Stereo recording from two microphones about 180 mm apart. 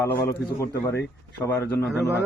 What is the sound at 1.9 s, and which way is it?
Speech, 5° right (ahead or behind).